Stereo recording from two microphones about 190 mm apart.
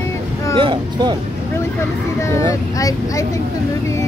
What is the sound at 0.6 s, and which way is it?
Speech, 25° right (ahead or behind).